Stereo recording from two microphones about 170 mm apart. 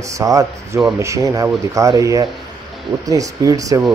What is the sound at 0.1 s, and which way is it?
Speech, 20° right (ahead or behind).